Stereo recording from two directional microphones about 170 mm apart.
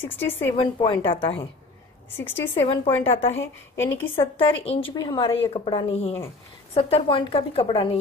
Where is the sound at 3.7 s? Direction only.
15° left (ahead or behind).